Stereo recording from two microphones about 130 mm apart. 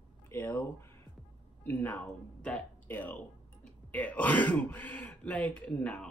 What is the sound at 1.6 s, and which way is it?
Speech, 15° left (ahead or behind).